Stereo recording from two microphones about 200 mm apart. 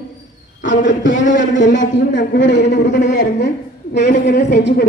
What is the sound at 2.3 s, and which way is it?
A woman's voice, 60° left (ahead or behind).